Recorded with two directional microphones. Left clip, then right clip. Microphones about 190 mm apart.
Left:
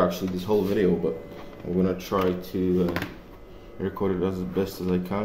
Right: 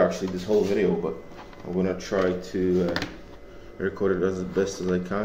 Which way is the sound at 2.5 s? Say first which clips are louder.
Right 2 dB; 35° left (ahead or behind).